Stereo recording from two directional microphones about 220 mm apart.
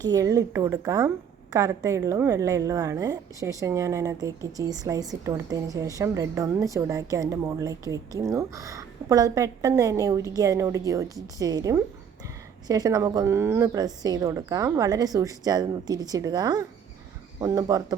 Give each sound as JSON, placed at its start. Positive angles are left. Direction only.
{"t": 0.0, "sound": "a woman's voice", "side_deg": -15}